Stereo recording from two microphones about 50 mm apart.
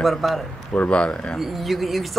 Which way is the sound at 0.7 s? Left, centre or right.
Left.